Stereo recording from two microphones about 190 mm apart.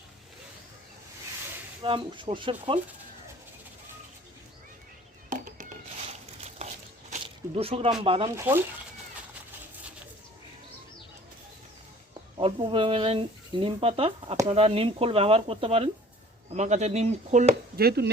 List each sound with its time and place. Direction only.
1.8 s speech: 25° right (ahead or behind)
5.3 s a sound: 45° right (ahead or behind)
8.0 s speech: 30° right (ahead or behind)
8.3 s speech: 15° right (ahead or behind)
12.4 s speech: 30° right (ahead or behind)
17.7 s speech: 55° right (ahead or behind)